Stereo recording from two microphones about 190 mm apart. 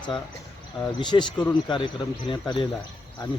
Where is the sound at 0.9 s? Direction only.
25° left (ahead or behind).